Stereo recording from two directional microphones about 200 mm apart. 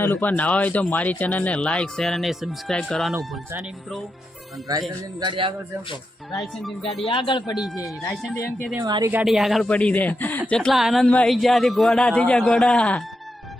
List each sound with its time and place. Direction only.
0.0 s speech: 10° left (ahead or behind)
3.2 s speech: 10° right (ahead or behind)
4.9 s a man's voice: 25° right (ahead or behind)
6.4 s speech: centre (ahead or behind)
7.1 s speech: 25° left (ahead or behind)
8.1 s a woman's voice: centre (ahead or behind)
8.8 s a man's voice: 20° right (ahead or behind)
9.1 s speech: centre (ahead or behind)